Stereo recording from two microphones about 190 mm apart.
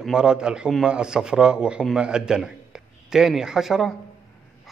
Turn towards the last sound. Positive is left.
turn(degrees=0)  # may be behind; listen again after turning